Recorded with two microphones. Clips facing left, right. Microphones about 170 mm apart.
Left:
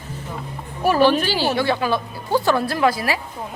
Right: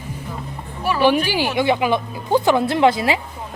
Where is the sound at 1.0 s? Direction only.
15° right (ahead or behind).